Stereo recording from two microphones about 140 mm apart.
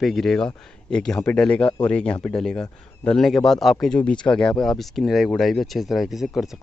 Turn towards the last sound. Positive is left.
turn(degrees=0)  # may be behind; listen again after turning